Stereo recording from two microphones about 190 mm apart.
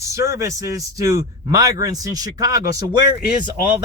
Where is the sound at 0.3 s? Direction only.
15° right (ahead or behind).